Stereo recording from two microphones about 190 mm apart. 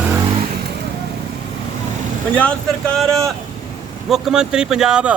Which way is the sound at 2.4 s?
5° left (ahead or behind).